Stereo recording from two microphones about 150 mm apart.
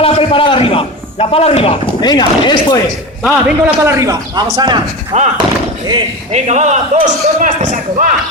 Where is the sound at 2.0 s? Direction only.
30° left (ahead or behind).